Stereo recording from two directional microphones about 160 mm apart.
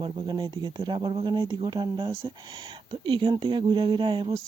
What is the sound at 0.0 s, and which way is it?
Speech, 30° right (ahead or behind).